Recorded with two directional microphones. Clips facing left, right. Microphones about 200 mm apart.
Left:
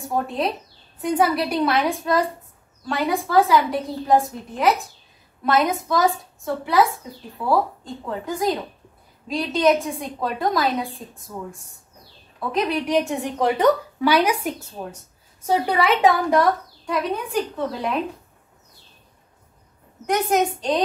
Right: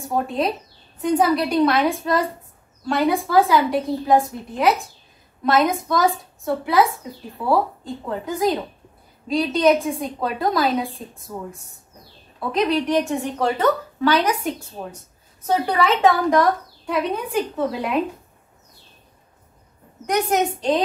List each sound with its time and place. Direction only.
0.1 s a woman's voice: centre (ahead or behind)
12.4 s a woman's voice: centre (ahead or behind)
12.8 s a woman's voice: 15° left (ahead or behind)
14.8 s a woman's voice: centre (ahead or behind)
15.4 s a woman's voice: 10° left (ahead or behind)
20.1 s a woman's voice: centre (ahead or behind)